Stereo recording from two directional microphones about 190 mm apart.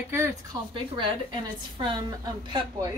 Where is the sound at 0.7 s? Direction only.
25° right (ahead or behind).